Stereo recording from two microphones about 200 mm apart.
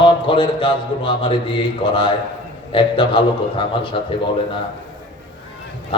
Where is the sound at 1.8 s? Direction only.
25° left (ahead or behind).